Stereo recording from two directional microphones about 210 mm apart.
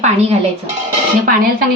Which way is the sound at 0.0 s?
30° right (ahead or behind).